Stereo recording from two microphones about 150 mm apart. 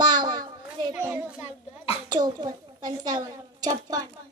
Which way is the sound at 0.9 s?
10° right (ahead or behind).